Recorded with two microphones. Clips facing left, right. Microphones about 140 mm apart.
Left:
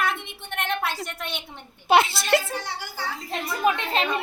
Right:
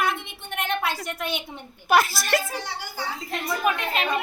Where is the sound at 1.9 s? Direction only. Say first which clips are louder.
Left 2 dB; 25° left (ahead or behind).